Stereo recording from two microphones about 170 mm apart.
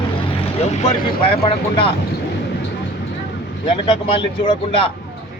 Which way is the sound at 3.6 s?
30° left (ahead or behind).